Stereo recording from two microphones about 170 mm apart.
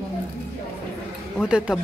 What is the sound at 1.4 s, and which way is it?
Speech, 5° right (ahead or behind).